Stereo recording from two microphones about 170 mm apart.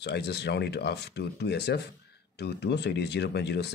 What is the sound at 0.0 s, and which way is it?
Speech, 80° left.